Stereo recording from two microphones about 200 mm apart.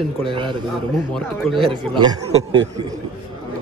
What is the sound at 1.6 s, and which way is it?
Speech, 25° right (ahead or behind).